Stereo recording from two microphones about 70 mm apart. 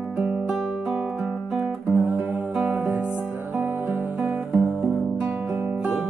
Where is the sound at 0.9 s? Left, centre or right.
Centre.